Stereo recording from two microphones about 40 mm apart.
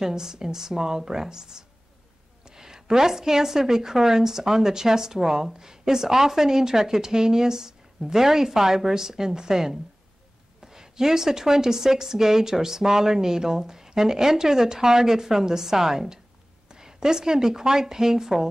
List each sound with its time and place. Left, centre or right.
0.0 s a woman's voice: centre